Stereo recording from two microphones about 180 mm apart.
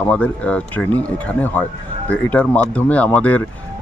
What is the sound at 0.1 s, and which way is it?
Speech, 5° left (ahead or behind).